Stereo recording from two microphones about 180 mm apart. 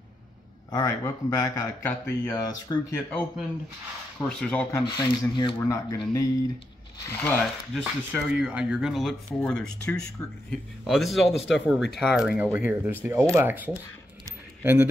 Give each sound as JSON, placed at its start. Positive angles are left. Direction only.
{"t": 0.7, "sound": "speech", "side_deg": 20}
{"t": 3.1, "sound": "speech", "side_deg": 5}
{"t": 4.7, "sound": "speech", "side_deg": 20}
{"t": 7.1, "sound": "speech", "side_deg": 10}
{"t": 7.8, "sound": "a man's voice", "side_deg": -5}